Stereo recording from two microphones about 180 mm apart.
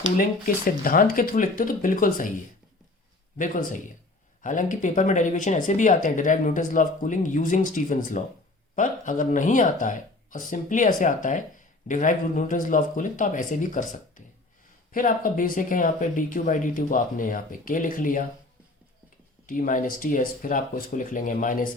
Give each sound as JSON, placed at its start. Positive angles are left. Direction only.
{"t": 0.2, "sound": "speech", "side_deg": 50}
{"t": 3.3, "sound": "speech", "side_deg": 45}
{"t": 19.5, "sound": "speech", "side_deg": 45}